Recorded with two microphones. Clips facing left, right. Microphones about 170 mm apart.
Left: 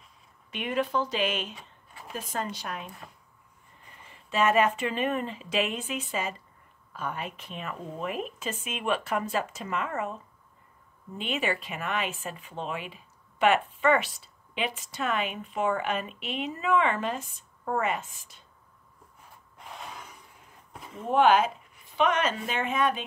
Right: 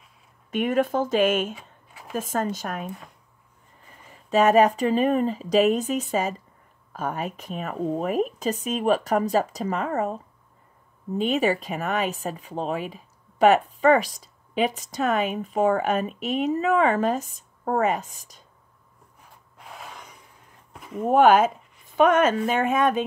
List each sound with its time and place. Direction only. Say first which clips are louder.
0.5 s speech: right 7 dB; 45° right (ahead or behind)
1.5 s a sound: right 7 dB; 5° right (ahead or behind)
2.1 s speech: right 7 dB; 45° right (ahead or behind)
4.1 s speech: right 6 dB; 40° right (ahead or behind)
19.6 s a sound: right 1 dB; centre (ahead or behind)
21.1 s speech: right 5 dB; 45° right (ahead or behind)